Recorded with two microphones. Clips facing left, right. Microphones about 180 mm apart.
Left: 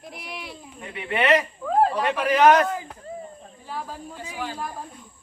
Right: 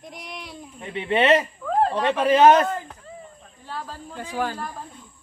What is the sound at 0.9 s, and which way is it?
Speech, 25° right (ahead or behind).